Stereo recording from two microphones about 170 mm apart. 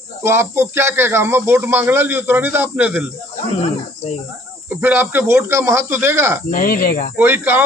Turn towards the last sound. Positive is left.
turn(degrees=-10)  # may be behind; listen again after turning